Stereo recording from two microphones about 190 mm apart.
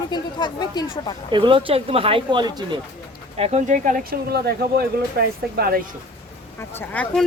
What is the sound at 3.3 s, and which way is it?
Speech, 35° right (ahead or behind).